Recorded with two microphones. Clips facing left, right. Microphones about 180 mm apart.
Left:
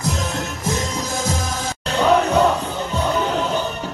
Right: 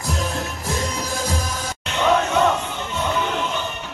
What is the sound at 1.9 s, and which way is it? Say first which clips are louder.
Music: left 3 dB; 35° left (ahead or behind).